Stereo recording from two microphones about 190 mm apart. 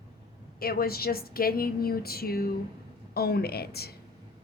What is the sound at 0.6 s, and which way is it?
A woman's voice, 55° left (ahead or behind).